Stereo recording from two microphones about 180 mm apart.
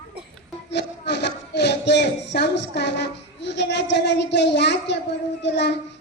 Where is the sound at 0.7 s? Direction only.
70° left (ahead or behind).